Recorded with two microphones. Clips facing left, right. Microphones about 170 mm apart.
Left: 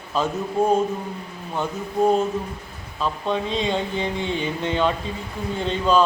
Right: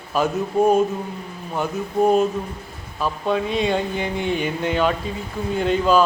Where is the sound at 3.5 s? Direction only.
25° left (ahead or behind).